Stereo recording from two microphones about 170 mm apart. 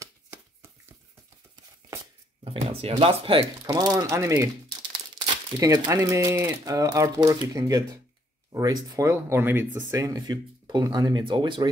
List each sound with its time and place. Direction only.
0.0 s shuffling cards: 15° right (ahead or behind)
2.4 s speech: 35° right (ahead or behind)
3.6 s speech: 20° right (ahead or behind)